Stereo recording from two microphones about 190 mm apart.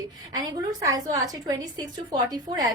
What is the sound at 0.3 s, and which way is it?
A woman's voice, 20° right (ahead or behind).